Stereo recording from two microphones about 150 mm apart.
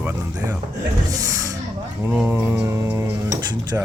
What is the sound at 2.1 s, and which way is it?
Speech, 15° right (ahead or behind).